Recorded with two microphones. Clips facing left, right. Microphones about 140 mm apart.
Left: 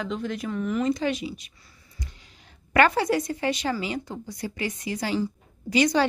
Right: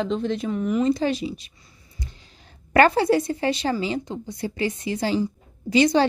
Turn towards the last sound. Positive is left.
turn(degrees=-30)  # may be behind; listen again after turning